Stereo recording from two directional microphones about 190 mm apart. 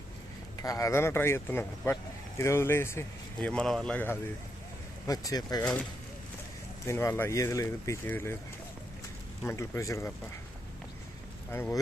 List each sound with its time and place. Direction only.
0.5 s speech: 20° left (ahead or behind)
5.6 s speech: 5° left (ahead or behind)
9.4 s speech: 15° left (ahead or behind)
11.5 s speech: 10° left (ahead or behind)